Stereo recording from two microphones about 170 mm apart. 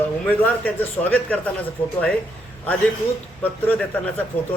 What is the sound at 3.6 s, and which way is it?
Speech, 10° left (ahead or behind).